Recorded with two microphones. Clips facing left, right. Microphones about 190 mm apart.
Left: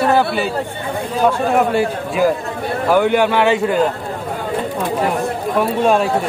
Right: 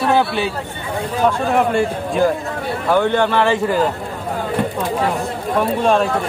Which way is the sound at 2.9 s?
10° left (ahead or behind).